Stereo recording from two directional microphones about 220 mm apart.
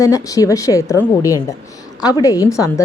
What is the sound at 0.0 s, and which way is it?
A woman's voice, 15° left (ahead or behind).